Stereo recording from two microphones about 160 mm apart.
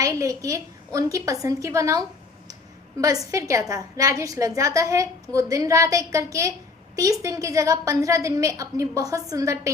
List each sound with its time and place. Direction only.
0.0 s a woman's voice: 20° right (ahead or behind)
3.3 s a woman's voice: 20° right (ahead or behind)